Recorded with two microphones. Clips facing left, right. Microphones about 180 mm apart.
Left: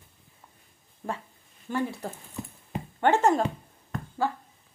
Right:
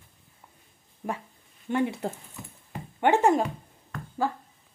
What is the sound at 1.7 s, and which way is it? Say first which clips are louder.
Speech: right 3 dB; 20° right (ahead or behind).